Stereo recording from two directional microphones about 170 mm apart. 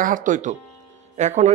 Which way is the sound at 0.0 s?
50° right (ahead or behind).